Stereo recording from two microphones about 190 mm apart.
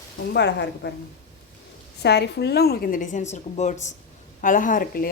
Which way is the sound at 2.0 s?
60° left (ahead or behind).